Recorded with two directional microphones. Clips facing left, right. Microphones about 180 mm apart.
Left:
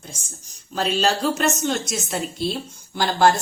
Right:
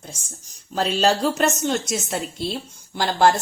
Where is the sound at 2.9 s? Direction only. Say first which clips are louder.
Even; 25° right (ahead or behind).